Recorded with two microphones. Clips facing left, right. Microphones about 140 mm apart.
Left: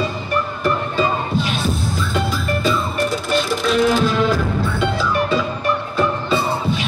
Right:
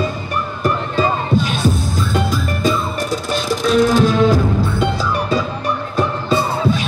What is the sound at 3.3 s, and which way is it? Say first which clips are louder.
Music: right 3 dB; 40° right (ahead or behind).